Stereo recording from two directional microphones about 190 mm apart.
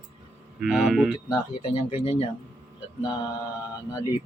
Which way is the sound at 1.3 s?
30° left (ahead or behind).